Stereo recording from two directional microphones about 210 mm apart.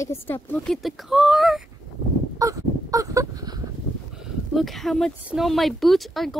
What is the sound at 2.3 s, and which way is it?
Caw, 15° right (ahead or behind).